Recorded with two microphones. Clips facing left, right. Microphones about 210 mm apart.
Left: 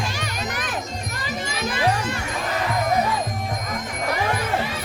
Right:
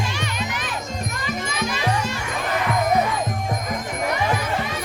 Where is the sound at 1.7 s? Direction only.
55° left (ahead or behind).